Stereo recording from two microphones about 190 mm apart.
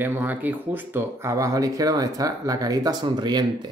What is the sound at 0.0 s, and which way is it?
Speech, 10° right (ahead or behind).